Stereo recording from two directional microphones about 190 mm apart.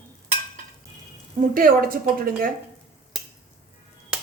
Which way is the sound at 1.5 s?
50° right (ahead or behind).